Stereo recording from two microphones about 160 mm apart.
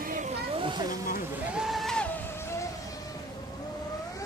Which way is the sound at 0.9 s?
60° left (ahead or behind).